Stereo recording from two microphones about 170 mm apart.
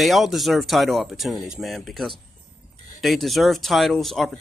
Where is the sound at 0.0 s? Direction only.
Centre (ahead or behind).